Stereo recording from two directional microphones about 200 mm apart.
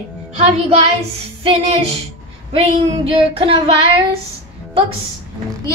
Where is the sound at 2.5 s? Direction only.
30° right (ahead or behind).